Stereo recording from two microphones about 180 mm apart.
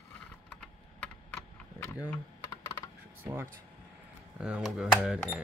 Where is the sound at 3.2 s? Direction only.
10° right (ahead or behind).